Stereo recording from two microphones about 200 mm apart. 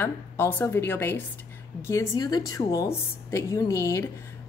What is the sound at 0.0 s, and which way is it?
Speech, 10° left (ahead or behind).